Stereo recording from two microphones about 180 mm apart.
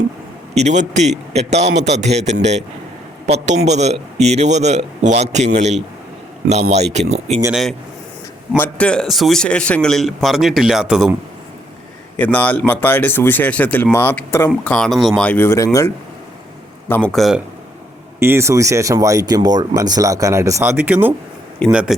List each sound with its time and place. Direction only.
0.5 s a man's voice: 40° right (ahead or behind)
7.5 s a man's voice: centre (ahead or behind)
12.1 s speech: 10° left (ahead or behind)
16.9 s a man's voice: 5° left (ahead or behind)
18.2 s a man's voice: 15° right (ahead or behind)